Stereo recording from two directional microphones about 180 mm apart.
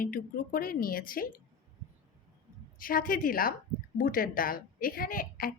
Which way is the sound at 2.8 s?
50° left (ahead or behind).